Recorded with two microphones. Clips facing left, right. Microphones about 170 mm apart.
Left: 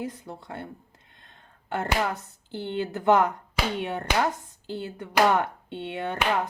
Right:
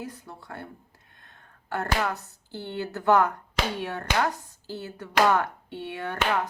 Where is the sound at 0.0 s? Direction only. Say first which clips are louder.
Left 4 dB; 20° left (ahead or behind).